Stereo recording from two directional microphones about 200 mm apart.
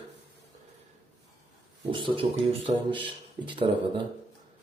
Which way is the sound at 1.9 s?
25° right (ahead or behind).